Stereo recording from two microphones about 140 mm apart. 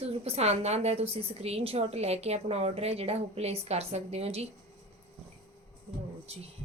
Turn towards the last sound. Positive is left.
turn(degrees=-45)  # may be behind; listen again after turning